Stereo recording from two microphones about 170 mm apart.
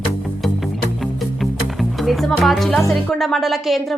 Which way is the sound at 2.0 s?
Centre (ahead or behind).